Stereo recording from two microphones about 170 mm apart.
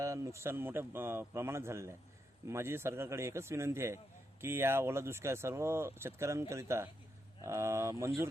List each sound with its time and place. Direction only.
0.0 s speech: 20° right (ahead or behind)